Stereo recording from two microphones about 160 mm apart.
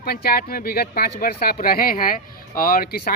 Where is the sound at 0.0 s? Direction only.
70° left (ahead or behind).